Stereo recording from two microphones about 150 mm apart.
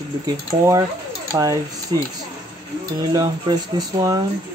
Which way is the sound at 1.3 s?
20° right (ahead or behind).